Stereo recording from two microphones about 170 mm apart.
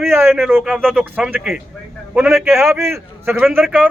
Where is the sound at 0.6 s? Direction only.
Centre (ahead or behind).